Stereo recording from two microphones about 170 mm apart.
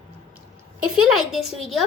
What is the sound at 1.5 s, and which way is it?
Speech, centre (ahead or behind).